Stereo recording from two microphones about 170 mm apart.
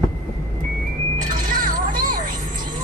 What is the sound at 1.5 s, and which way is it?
Music, 55° right (ahead or behind).